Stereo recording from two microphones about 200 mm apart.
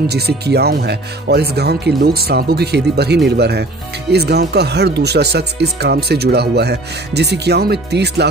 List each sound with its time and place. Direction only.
0.1 s speech: 55° right (ahead or behind)